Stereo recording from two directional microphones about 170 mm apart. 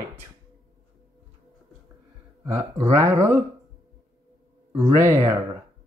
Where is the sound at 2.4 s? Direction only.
15° right (ahead or behind).